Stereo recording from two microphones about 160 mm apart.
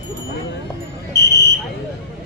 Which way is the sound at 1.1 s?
20° left (ahead or behind).